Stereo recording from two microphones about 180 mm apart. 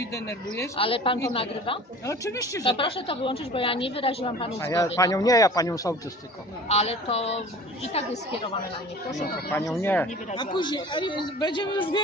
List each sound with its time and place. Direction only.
0.0 s speech: 15° left (ahead or behind)
0.7 s a man's voice: 30° left (ahead or behind)
2.0 s speech: 15° left (ahead or behind)
2.8 s a woman's voice: 30° left (ahead or behind)
4.6 s a man's voice: 15° left (ahead or behind)
6.7 s a woman's voice: 35° left (ahead or behind)
9.5 s speech: 15° left (ahead or behind)
10.3 s a man's voice: 25° left (ahead or behind)